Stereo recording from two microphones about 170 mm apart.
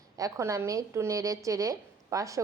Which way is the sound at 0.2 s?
20° right (ahead or behind).